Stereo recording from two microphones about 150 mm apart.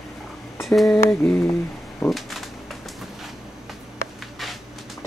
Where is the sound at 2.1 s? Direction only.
Centre (ahead or behind).